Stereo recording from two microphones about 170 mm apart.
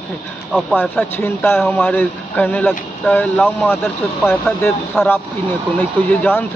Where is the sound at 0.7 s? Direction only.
10° left (ahead or behind).